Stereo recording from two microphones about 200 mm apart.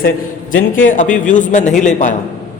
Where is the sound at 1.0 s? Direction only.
40° left (ahead or behind).